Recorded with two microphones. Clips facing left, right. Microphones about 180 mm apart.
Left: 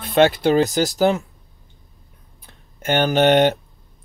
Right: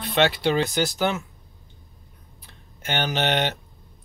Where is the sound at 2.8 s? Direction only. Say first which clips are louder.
Left 9 dB; 50° left (ahead or behind).